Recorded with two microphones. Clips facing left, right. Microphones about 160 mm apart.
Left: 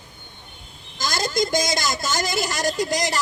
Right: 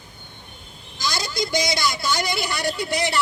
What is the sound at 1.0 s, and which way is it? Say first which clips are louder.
A woman's voice: left 3 dB; 50° left (ahead or behind).